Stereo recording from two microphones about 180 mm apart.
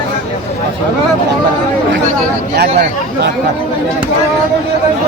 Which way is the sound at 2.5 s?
65° right (ahead or behind).